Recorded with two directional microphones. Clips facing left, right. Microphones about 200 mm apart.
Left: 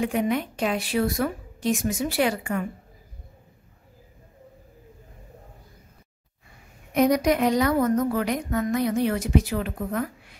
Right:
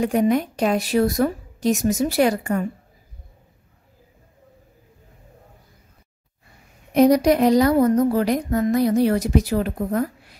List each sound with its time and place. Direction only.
0.0 s a woman's voice: 40° right (ahead or behind)
6.9 s a woman's voice: 35° right (ahead or behind)